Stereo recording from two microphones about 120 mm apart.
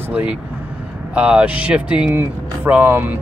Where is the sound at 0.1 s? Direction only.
10° right (ahead or behind).